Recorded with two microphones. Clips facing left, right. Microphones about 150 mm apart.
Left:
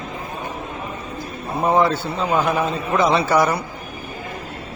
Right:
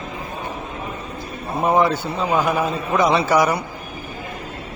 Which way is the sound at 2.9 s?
15° right (ahead or behind).